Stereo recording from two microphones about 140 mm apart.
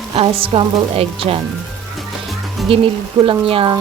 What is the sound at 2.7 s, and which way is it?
Speech, 40° right (ahead or behind).